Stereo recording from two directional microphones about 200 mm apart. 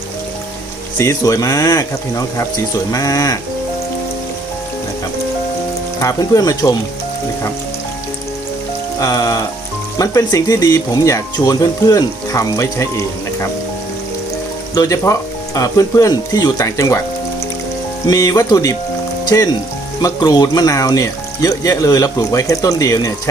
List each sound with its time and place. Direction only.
0.9 s speech: 15° left (ahead or behind)
6.0 s speech: 15° left (ahead or behind)
9.0 s speech: 15° left (ahead or behind)
14.8 s speech: 15° left (ahead or behind)
18.1 s speech: 15° left (ahead or behind)